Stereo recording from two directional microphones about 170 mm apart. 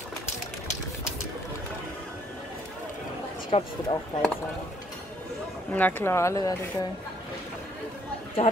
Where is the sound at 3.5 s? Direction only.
40° left (ahead or behind).